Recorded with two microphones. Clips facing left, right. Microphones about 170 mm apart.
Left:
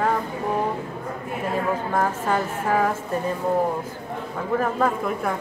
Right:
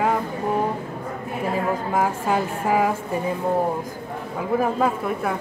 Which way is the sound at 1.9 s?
10° right (ahead or behind).